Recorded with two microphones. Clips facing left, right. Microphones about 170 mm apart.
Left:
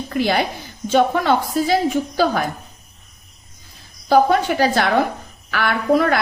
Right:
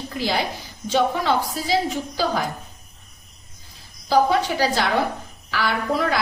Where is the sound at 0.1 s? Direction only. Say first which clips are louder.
Left 5 dB; 60° left (ahead or behind).